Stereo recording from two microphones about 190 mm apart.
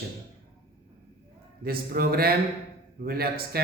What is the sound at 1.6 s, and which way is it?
A man's voice, 50° right (ahead or behind).